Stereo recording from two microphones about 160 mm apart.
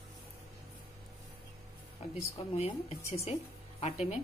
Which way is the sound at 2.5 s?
40° left (ahead or behind).